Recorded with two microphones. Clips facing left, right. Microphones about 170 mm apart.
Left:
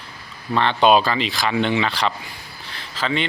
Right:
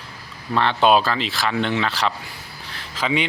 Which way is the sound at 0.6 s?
5° right (ahead or behind).